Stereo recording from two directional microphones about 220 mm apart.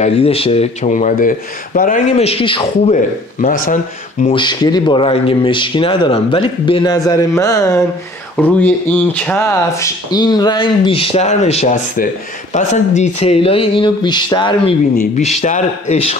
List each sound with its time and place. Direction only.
0.0 s speech: 25° left (ahead or behind)
3.3 s speech: 40° left (ahead or behind)
4.3 s speech: 20° left (ahead or behind)
10.1 s speech: 20° left (ahead or behind)
15.0 s speech: 35° left (ahead or behind)